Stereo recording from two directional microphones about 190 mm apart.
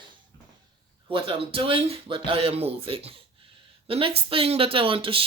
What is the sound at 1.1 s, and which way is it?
Speech, 30° right (ahead or behind).